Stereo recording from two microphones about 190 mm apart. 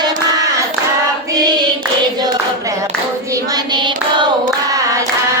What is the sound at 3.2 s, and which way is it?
Hands, 15° right (ahead or behind).